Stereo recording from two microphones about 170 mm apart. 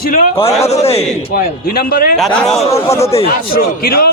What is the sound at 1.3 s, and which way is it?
Speech, 60° left (ahead or behind).